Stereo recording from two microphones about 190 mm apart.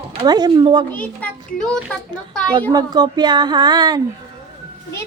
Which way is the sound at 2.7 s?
20° right (ahead or behind).